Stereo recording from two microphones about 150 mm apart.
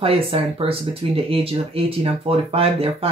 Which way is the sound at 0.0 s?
40° right (ahead or behind).